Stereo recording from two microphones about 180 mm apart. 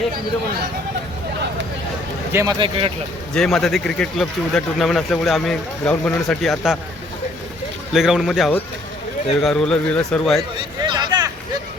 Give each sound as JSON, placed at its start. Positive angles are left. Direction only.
{"t": 2.3, "sound": "speech", "side_deg": -20}
{"t": 3.3, "sound": "a man's voice", "side_deg": 0}
{"t": 7.9, "sound": "a man's voice", "side_deg": 0}
{"t": 10.6, "sound": "a sound", "side_deg": -25}